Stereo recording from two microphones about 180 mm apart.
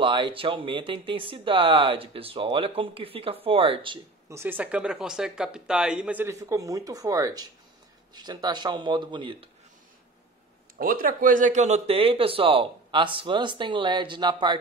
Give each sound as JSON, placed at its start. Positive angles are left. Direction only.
{"t": 0.0, "sound": "speech", "side_deg": -30}
{"t": 4.3, "sound": "speech", "side_deg": -10}
{"t": 10.8, "sound": "speech", "side_deg": -50}